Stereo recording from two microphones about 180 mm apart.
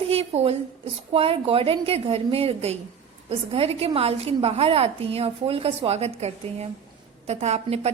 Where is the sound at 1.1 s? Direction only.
30° right (ahead or behind).